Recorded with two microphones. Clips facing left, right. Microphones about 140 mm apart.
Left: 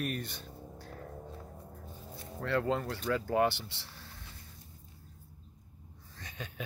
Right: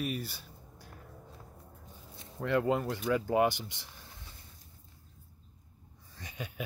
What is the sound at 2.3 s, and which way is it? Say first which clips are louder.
Speech: right 2 dB; 15° right (ahead or behind).